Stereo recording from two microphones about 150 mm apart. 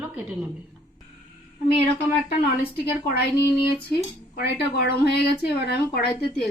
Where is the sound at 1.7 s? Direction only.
40° left (ahead or behind).